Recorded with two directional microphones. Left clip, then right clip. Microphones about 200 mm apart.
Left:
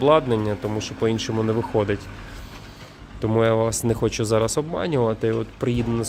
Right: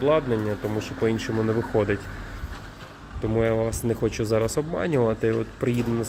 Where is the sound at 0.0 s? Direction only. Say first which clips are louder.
Left 4 dB; 30° left (ahead or behind).